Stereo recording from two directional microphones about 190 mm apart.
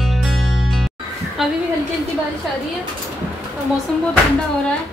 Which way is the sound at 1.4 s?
Centre (ahead or behind).